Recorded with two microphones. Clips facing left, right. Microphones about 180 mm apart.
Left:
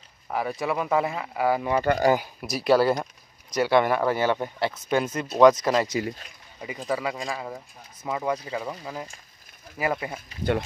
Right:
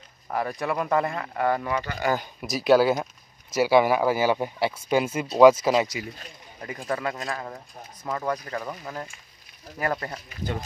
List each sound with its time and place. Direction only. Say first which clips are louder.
0.3 s speech: even; centre (ahead or behind)
1.8 s speech: left 9 dB; 50° left (ahead or behind)
2.1 s speech: left 1 dB; centre (ahead or behind)
6.9 s speech: left 1 dB; 5° left (ahead or behind)